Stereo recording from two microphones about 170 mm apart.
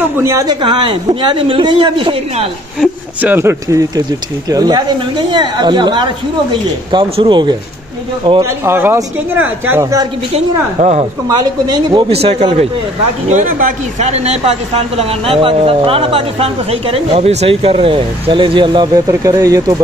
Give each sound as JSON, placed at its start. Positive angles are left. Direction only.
{"t": 0.2, "sound": "speech", "side_deg": -15}
{"t": 2.8, "sound": "speech", "side_deg": -10}
{"t": 8.6, "sound": "speech", "side_deg": -15}
{"t": 10.3, "sound": "speech", "side_deg": -40}
{"t": 11.2, "sound": "speech", "side_deg": -25}
{"t": 12.1, "sound": "speech", "side_deg": -35}
{"t": 13.3, "sound": "speech", "side_deg": -50}